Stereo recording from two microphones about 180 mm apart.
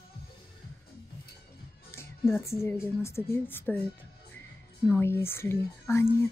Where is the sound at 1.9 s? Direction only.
15° left (ahead or behind).